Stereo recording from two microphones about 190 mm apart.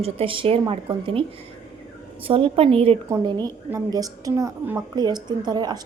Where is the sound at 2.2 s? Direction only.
30° right (ahead or behind).